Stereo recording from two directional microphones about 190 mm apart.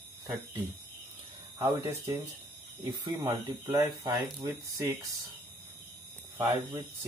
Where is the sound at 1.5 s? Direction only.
20° right (ahead or behind).